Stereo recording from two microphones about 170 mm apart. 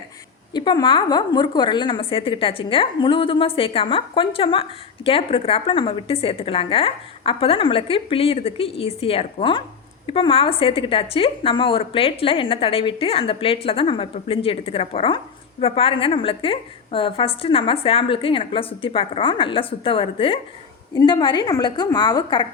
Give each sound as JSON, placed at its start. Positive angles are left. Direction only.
{"t": 0.5, "sound": "a woman's voice", "side_deg": 25}